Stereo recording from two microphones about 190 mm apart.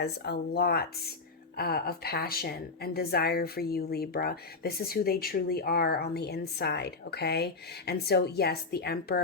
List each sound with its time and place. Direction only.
0.0 s a woman's voice: 55° left (ahead or behind)